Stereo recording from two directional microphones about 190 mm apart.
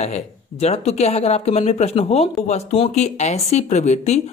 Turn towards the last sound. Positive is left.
turn(degrees=35)  # may be behind; listen again after turning